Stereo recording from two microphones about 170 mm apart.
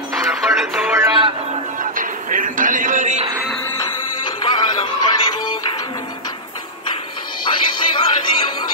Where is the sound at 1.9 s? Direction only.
50° right (ahead or behind).